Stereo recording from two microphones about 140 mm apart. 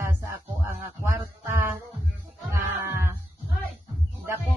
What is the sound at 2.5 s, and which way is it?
Speech, 20° right (ahead or behind).